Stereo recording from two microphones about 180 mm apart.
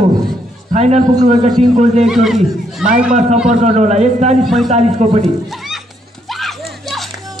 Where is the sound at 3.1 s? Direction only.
40° right (ahead or behind).